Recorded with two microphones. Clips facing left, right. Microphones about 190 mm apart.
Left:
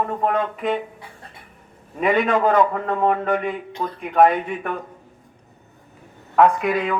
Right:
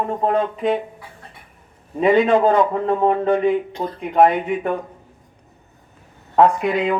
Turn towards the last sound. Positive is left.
turn(degrees=-25)  # may be behind; listen again after turning